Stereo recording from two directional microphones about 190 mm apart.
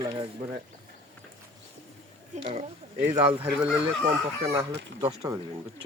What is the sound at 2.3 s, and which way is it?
Speech, 40° right (ahead or behind).